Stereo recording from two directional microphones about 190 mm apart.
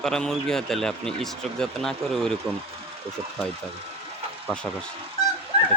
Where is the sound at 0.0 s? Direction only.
Centre (ahead or behind).